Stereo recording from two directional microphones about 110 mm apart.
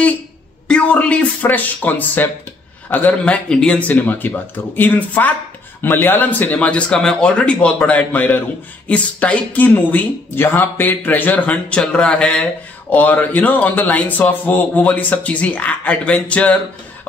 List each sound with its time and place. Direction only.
0.7 s speech: 10° left (ahead or behind)